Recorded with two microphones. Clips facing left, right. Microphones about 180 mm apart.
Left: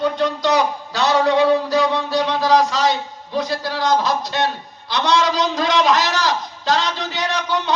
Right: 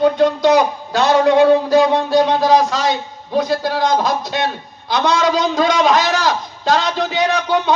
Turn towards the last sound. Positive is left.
turn(degrees=-50)  # may be behind; listen again after turning